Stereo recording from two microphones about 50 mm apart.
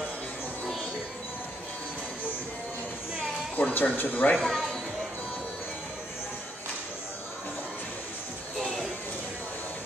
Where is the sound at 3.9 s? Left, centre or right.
Left.